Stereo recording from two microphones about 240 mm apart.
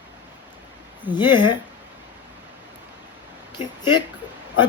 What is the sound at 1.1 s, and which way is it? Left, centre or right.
Speech, centre.